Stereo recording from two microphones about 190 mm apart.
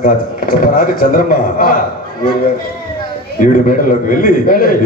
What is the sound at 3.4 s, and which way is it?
A man's voice, 45° left (ahead or behind).